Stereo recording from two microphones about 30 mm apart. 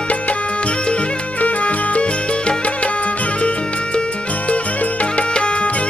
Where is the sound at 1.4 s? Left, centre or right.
Left.